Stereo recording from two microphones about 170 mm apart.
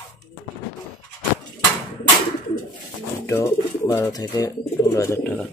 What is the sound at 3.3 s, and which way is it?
Speech, 15° left (ahead or behind).